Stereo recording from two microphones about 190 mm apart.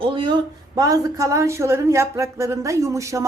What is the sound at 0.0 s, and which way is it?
Speech, 25° right (ahead or behind).